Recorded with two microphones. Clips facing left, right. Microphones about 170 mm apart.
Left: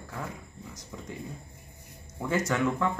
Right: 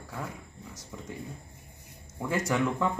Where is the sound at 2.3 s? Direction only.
10° right (ahead or behind).